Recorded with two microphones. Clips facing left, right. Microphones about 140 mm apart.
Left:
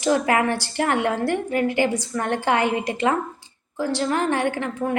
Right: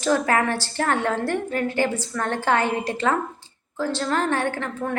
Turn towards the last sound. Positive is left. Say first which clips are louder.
# left 3 dB
turn(degrees=15)  # may be behind; listen again after turning